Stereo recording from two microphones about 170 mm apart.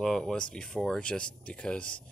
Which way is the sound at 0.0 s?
5° left (ahead or behind).